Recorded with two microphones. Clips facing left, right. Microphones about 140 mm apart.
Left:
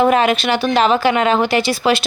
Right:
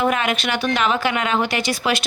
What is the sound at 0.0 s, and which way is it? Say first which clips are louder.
Speech: left 6 dB; 30° left (ahead or behind).